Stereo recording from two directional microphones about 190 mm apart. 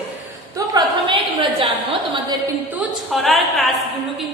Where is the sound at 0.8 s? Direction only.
25° right (ahead or behind).